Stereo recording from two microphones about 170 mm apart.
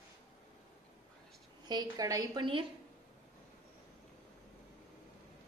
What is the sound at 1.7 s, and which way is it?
Speech, 20° right (ahead or behind).